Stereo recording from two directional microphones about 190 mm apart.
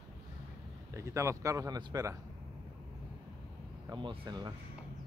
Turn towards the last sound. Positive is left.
turn(degrees=-20)  # may be behind; listen again after turning